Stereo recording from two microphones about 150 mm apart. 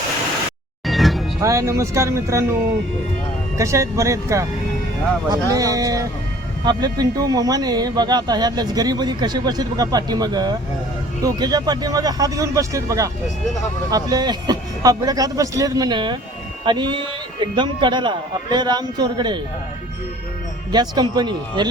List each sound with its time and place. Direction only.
0.9 s music: centre (ahead or behind)
1.4 s speech: 20° right (ahead or behind)
3.6 s a man's voice: 20° right (ahead or behind)
20.7 s speech: 30° right (ahead or behind)